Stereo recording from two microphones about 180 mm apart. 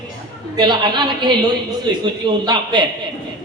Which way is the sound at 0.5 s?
25° right (ahead or behind).